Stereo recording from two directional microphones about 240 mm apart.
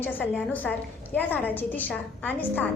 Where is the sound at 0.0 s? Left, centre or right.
Centre.